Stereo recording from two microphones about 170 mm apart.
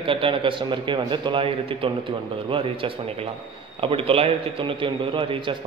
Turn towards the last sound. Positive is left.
turn(degrees=-30)  # may be behind; listen again after turning